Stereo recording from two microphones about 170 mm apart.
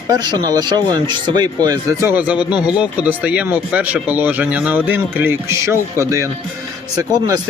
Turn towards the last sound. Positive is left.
turn(degrees=-20)  # may be behind; listen again after turning